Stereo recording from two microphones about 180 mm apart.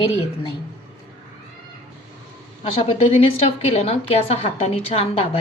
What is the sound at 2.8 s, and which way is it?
A woman's voice, 35° left (ahead or behind).